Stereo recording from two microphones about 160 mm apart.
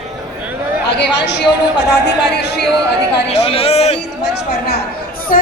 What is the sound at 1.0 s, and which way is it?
A woman's voice, 90° left.